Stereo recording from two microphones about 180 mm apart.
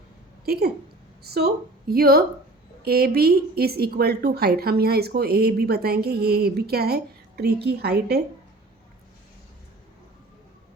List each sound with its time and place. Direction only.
0.4 s a woman's voice: 60° right (ahead or behind)